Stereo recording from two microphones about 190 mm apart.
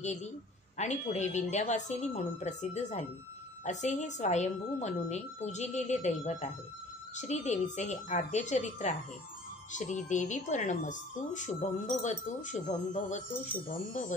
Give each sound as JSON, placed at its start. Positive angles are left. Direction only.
{"t": 0.0, "sound": "speech", "side_deg": 40}